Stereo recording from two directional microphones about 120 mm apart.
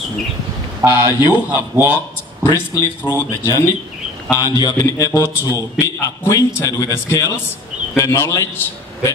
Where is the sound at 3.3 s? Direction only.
30° left (ahead or behind).